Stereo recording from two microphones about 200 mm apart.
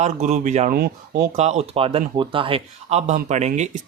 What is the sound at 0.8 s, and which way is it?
Speech, 50° right (ahead or behind).